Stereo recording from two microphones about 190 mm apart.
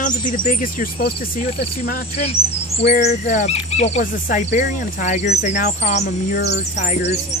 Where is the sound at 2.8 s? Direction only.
35° left (ahead or behind).